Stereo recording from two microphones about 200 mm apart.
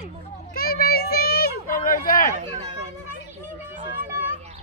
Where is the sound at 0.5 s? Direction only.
50° left (ahead or behind).